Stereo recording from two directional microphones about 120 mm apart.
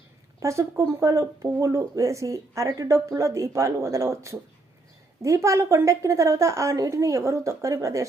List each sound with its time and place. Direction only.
0.3 s speech: 25° right (ahead or behind)